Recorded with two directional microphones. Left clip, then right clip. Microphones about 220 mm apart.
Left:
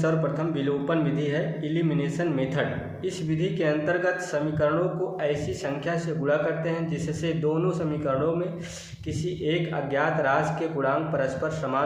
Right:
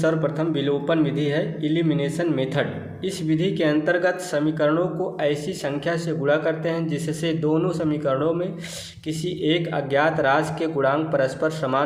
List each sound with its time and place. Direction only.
0.0 s a man's voice: 40° right (ahead or behind)